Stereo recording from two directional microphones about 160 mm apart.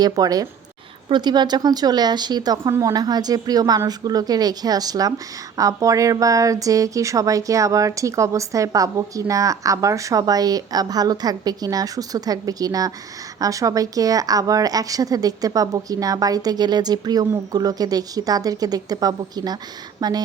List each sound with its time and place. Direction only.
0.0 s speech: 25° right (ahead or behind)